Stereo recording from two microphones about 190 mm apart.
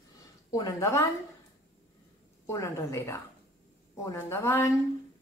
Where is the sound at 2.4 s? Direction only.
15° left (ahead or behind).